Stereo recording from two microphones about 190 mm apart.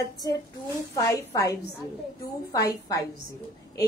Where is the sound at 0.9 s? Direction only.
15° left (ahead or behind).